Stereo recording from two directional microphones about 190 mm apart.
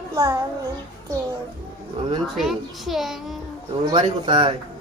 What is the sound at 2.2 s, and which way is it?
A child's voice, centre (ahead or behind).